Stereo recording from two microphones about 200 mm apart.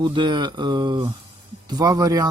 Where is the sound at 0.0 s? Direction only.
25° right (ahead or behind).